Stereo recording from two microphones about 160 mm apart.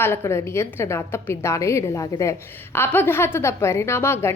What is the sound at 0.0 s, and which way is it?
A woman's voice, 15° left (ahead or behind).